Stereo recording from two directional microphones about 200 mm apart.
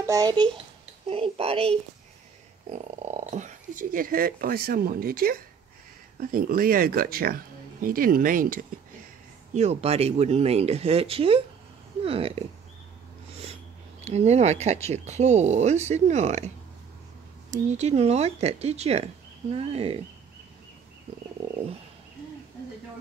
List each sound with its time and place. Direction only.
0.0 s speech: 15° right (ahead or behind)
14.0 s speech: 35° right (ahead or behind)